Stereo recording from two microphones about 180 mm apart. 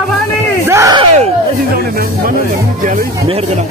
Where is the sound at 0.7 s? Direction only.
15° right (ahead or behind).